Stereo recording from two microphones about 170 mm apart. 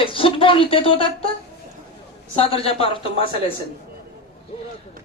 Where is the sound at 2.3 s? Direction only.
35° left (ahead or behind).